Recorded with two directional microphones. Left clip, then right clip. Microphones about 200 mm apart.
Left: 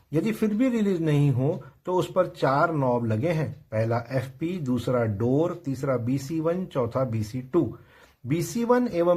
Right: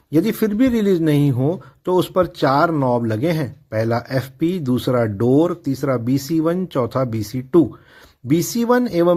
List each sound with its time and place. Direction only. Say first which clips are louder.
0.1 s speech: right 8 dB; 35° right (ahead or behind)